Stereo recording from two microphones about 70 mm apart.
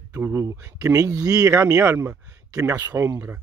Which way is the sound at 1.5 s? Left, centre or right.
Right.